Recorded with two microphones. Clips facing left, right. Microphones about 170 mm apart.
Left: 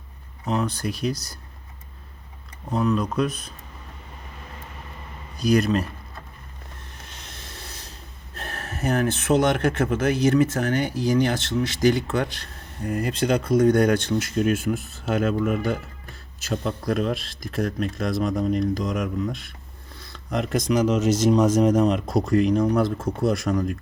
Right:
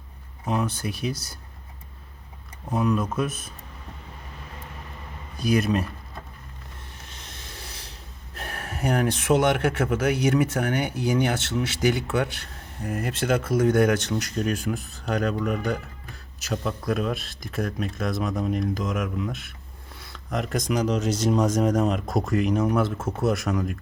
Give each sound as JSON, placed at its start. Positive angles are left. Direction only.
{"t": 0.4, "sound": "speech", "side_deg": -10}
{"t": 1.1, "sound": "speech", "side_deg": -25}
{"t": 2.7, "sound": "speech", "side_deg": -10}
{"t": 8.4, "sound": "speech", "side_deg": -10}